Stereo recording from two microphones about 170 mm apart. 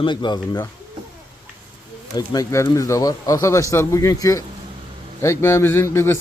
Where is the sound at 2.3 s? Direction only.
20° left (ahead or behind).